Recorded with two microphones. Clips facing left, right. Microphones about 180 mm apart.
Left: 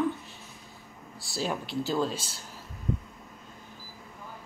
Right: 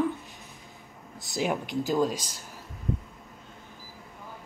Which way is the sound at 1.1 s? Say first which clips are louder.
Right 3 dB; 20° right (ahead or behind).